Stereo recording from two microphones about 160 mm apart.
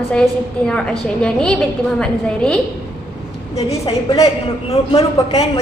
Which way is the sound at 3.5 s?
40° left (ahead or behind).